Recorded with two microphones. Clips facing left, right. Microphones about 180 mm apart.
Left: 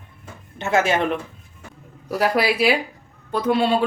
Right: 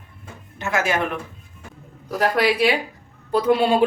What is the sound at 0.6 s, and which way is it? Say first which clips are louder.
Speech: left 3 dB; 25° left (ahead or behind).